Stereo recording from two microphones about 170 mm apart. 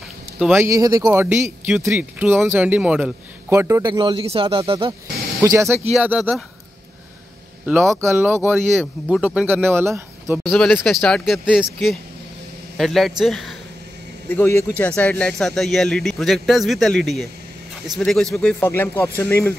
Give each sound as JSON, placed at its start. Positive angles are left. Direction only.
{"t": 0.5, "sound": "speech", "side_deg": -15}
{"t": 5.4, "sound": "speech", "side_deg": -20}
{"t": 7.9, "sound": "speech", "side_deg": -15}
{"t": 10.5, "sound": "speech", "side_deg": 0}
{"t": 14.3, "sound": "speech", "side_deg": 10}